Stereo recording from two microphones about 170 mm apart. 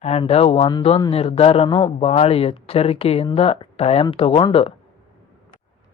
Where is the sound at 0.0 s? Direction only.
40° left (ahead or behind).